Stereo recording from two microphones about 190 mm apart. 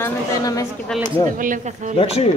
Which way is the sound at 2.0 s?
30° left (ahead or behind).